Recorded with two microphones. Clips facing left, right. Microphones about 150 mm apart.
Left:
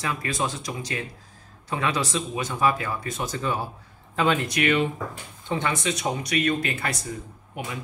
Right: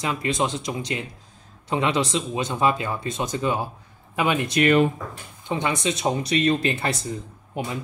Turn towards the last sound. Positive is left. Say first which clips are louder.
# right 5 dB
turn(degrees=-30)  # may be behind; listen again after turning